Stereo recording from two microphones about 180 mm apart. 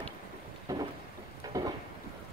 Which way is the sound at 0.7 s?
20° right (ahead or behind).